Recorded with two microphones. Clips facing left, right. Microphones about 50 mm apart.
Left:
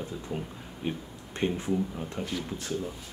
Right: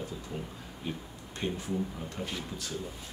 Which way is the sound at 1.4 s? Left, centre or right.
Left.